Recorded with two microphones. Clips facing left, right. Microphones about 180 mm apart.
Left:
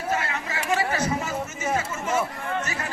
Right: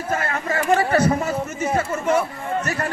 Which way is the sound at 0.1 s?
50° right (ahead or behind).